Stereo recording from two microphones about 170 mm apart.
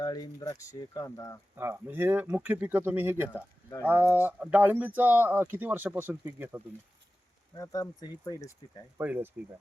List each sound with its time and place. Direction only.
0.0 s speech: 20° left (ahead or behind)
1.5 s speech: 15° right (ahead or behind)
7.5 s speech: 20° left (ahead or behind)
9.0 s speech: 10° right (ahead or behind)